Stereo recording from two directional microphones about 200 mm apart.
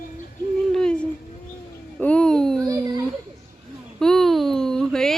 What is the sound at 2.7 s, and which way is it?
Speech, 20° right (ahead or behind).